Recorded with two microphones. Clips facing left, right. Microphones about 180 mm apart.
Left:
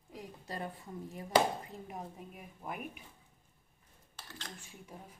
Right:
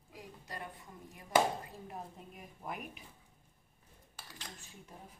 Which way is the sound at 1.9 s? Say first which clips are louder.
Left 2 dB; 10° left (ahead or behind).